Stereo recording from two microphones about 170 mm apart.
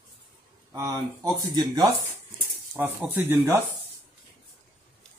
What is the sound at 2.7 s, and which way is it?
Speech, 10° right (ahead or behind).